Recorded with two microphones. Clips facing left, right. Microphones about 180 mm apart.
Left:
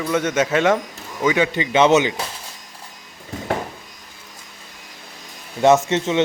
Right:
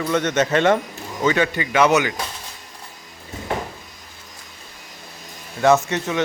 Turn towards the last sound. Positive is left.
turn(degrees=25)  # may be behind; listen again after turning